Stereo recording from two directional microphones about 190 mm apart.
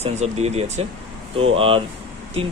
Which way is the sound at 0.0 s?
35° right (ahead or behind).